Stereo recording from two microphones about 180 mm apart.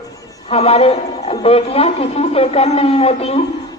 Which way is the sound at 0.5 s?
35° left (ahead or behind).